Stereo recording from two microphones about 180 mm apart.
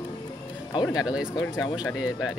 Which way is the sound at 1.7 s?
5° right (ahead or behind).